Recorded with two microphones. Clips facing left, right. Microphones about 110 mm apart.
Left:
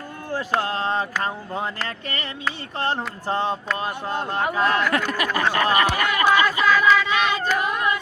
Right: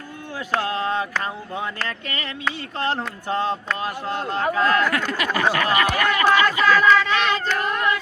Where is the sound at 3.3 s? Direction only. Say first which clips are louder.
Right 1 dB; 20° left (ahead or behind).